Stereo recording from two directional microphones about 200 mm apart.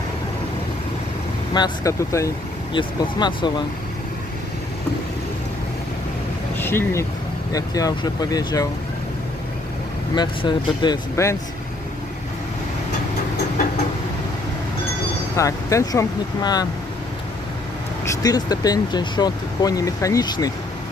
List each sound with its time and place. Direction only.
1.5 s speech: 20° left (ahead or behind)
6.5 s speech: 10° left (ahead or behind)
10.1 s speech: 25° left (ahead or behind)
15.3 s speech: 15° left (ahead or behind)
18.0 s speech: 15° left (ahead or behind)